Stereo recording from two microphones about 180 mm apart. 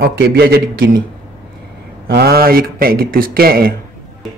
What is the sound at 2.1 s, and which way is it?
A man's voice, 60° right (ahead or behind).